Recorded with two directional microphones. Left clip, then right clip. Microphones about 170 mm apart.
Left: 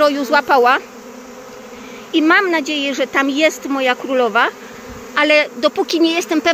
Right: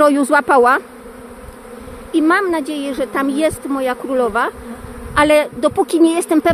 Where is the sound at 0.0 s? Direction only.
60° right (ahead or behind).